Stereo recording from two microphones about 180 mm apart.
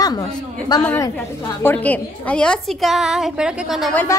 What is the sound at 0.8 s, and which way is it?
A woman's voice, 15° left (ahead or behind).